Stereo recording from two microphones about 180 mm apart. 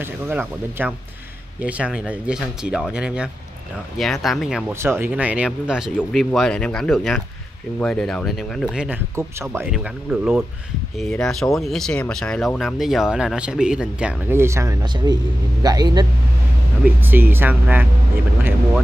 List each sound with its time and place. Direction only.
0.0 s speech: 10° right (ahead or behind)
4.7 s a man's voice: 15° right (ahead or behind)
17.0 s speech: 10° right (ahead or behind)